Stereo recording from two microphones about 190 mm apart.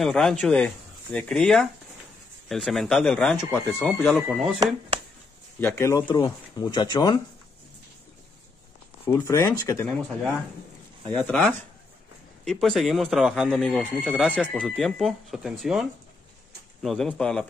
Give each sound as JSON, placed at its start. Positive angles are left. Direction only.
{"t": 0.0, "sound": "speech", "side_deg": 0}
{"t": 5.6, "sound": "speech", "side_deg": 15}
{"t": 9.0, "sound": "speech", "side_deg": 15}
{"t": 11.1, "sound": "speech", "side_deg": 5}